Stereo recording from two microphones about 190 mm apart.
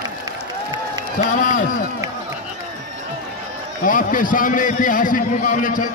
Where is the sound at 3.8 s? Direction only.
45° left (ahead or behind).